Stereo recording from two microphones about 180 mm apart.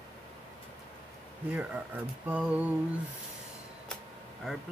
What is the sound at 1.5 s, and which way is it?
Speech, 10° right (ahead or behind).